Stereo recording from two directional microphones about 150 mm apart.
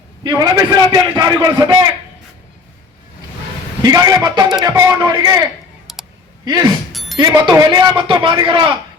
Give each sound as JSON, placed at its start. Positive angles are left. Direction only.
{"t": 0.2, "sound": "a man's voice", "side_deg": -25}
{"t": 3.8, "sound": "a man's voice", "side_deg": -25}
{"t": 5.9, "sound": "a sound", "side_deg": 0}
{"t": 6.4, "sound": "speech", "side_deg": -25}
{"t": 6.9, "sound": "music", "side_deg": 0}
{"t": 7.2, "sound": "a man's voice", "side_deg": -30}